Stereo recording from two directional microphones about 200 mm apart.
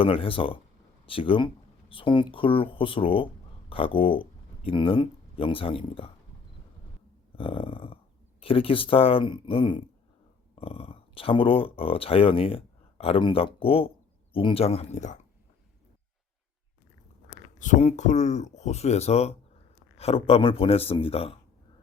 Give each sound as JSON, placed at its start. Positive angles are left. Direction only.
{"t": 0.0, "sound": "speech", "side_deg": 25}
{"t": 7.3, "sound": "speech", "side_deg": 25}
{"t": 17.6, "sound": "speech", "side_deg": 35}